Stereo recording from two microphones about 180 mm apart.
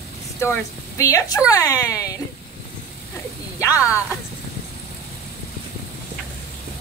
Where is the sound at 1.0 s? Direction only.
15° left (ahead or behind).